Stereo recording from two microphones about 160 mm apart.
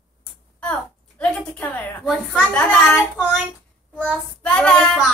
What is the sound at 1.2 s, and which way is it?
A woman's voice, 10° left (ahead or behind).